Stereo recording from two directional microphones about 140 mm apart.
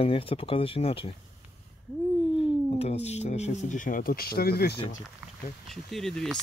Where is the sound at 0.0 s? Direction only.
40° left (ahead or behind).